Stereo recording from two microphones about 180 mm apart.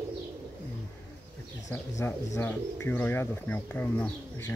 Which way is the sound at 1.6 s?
15° left (ahead or behind).